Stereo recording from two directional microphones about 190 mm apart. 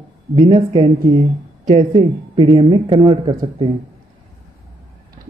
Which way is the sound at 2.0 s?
25° right (ahead or behind).